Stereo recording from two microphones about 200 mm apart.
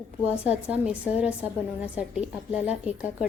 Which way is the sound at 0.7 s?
5° right (ahead or behind).